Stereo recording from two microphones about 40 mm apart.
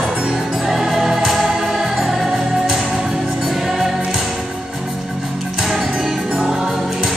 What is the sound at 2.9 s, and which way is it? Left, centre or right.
Music, right.